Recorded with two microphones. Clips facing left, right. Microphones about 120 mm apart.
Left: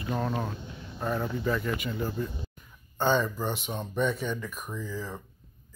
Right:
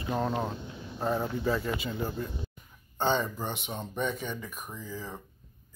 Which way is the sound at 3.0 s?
20° right (ahead or behind).